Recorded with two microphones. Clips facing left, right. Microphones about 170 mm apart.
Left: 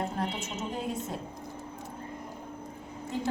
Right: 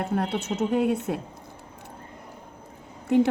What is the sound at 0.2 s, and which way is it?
A woman's voice, 65° right (ahead or behind).